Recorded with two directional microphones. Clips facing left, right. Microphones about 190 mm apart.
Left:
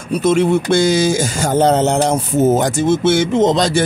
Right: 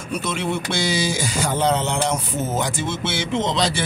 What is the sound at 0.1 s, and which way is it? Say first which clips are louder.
Speech: left 11 dB; 45° left (ahead or behind).